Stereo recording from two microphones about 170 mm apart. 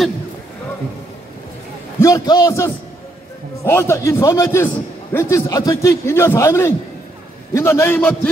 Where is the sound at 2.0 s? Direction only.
20° left (ahead or behind).